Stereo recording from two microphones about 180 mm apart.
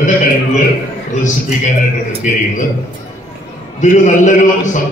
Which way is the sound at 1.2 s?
45° left (ahead or behind).